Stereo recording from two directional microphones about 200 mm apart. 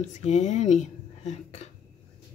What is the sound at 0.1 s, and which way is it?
A woman's voice, 35° left (ahead or behind).